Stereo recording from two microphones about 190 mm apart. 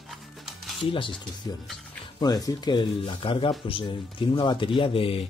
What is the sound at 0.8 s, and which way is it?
Speech, 25° left (ahead or behind).